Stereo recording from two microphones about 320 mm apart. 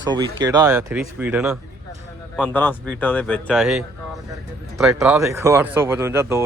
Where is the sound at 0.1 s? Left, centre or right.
Centre.